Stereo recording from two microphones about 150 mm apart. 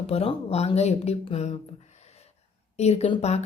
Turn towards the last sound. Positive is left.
turn(degrees=45)  # may be behind; listen again after turning